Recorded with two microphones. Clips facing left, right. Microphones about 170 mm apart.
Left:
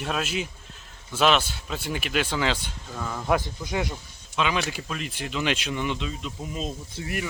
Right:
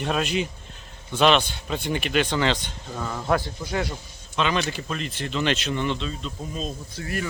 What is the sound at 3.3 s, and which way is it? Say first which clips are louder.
Speech: even; 20° left (ahead or behind).